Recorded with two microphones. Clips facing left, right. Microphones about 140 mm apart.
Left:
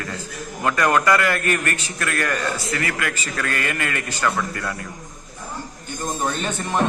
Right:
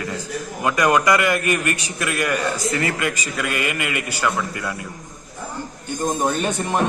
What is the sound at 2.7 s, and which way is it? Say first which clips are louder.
A man's voice: right 3 dB; 25° right (ahead or behind).